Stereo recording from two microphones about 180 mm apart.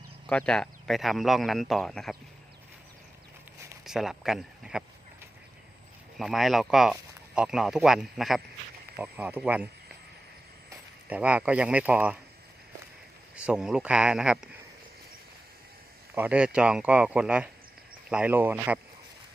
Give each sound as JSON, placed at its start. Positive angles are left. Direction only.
{"t": 0.3, "sound": "speech", "side_deg": 5}
{"t": 3.8, "sound": "speech", "side_deg": 0}
{"t": 6.1, "sound": "speech", "side_deg": 0}
{"t": 11.1, "sound": "speech", "side_deg": -10}
{"t": 13.3, "sound": "speech", "side_deg": -5}
{"t": 16.1, "sound": "speech", "side_deg": -10}